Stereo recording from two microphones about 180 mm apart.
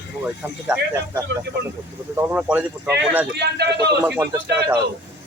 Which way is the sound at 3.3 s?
70° right (ahead or behind).